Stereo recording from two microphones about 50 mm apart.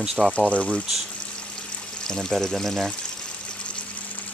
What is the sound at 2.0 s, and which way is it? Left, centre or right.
Speech, centre.